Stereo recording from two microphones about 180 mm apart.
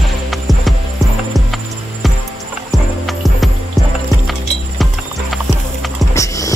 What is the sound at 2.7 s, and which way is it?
Music, centre (ahead or behind).